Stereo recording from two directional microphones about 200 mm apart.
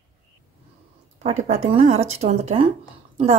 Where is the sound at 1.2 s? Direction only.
35° right (ahead or behind).